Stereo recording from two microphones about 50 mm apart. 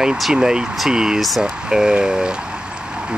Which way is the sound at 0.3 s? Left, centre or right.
Centre.